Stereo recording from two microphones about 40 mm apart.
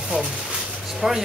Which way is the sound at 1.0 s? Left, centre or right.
Centre.